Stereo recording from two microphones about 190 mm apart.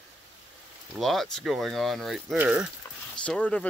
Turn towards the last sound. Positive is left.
turn(degrees=5)  # may be behind; listen again after turning